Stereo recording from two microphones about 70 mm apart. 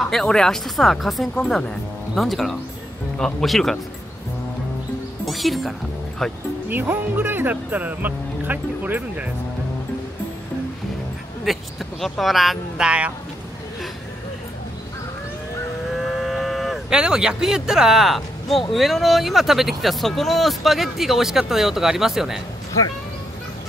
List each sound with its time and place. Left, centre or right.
0.0 s speech: centre
1.3 s speech: centre
2.1 s speech: centre
5.2 s music: centre
6.7 s speech: right
11.5 s speech: centre
12.8 s speech: centre
16.2 s speech: centre